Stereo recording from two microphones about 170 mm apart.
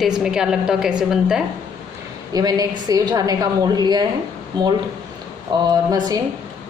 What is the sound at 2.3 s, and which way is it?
A woman's voice, 20° right (ahead or behind).